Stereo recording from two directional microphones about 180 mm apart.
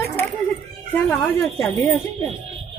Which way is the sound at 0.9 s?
10° left (ahead or behind).